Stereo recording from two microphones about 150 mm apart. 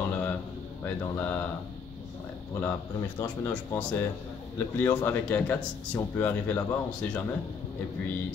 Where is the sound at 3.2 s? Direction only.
15° left (ahead or behind).